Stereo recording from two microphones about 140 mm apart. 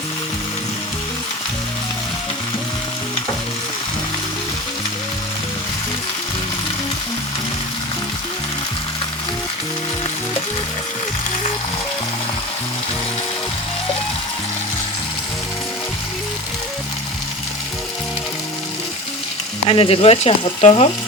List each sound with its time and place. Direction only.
19.6 s speech: 40° left (ahead or behind)